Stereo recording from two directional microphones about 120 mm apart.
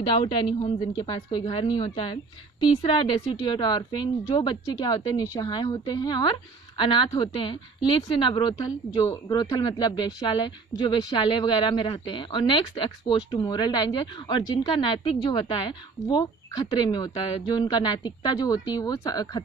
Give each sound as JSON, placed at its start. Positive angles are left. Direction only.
{"t": 0.0, "sound": "speech", "side_deg": 45}
{"t": 2.6, "sound": "a woman's voice", "side_deg": 60}
{"t": 2.9, "sound": "speech", "side_deg": 40}